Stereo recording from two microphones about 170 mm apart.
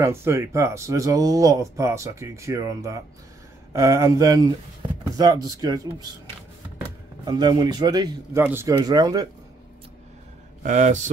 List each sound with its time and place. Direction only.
0.0 s a man's voice: 15° right (ahead or behind)
8.7 s a man's voice: 25° right (ahead or behind)
10.6 s speech: 45° right (ahead or behind)